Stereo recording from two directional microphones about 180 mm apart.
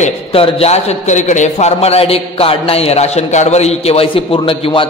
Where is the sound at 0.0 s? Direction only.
35° left (ahead or behind).